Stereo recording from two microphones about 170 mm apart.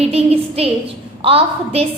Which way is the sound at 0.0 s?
35° right (ahead or behind).